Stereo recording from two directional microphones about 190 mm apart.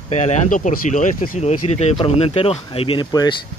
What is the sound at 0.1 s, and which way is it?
Speech, 35° left (ahead or behind).